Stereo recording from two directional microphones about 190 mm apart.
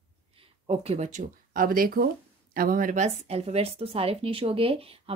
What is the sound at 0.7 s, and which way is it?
Speech, 35° right (ahead or behind).